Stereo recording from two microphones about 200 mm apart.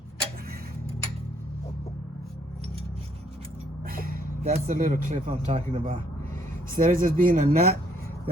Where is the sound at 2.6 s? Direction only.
30° right (ahead or behind).